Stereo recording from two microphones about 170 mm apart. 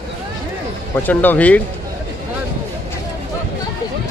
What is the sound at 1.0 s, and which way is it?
Speech, 10° left (ahead or behind).